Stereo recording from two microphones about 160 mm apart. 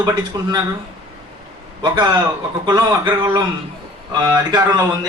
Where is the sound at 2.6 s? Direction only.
25° right (ahead or behind).